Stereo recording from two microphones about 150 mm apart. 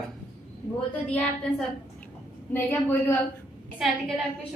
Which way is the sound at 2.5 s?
15° left (ahead or behind).